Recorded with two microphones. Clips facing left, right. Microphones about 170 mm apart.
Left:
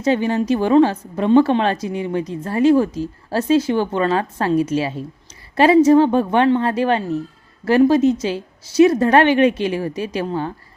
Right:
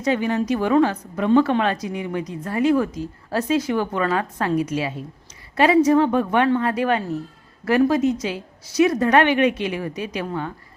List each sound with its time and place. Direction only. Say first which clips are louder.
0.0 s a woman's voice: left 3 dB; 30° left (ahead or behind)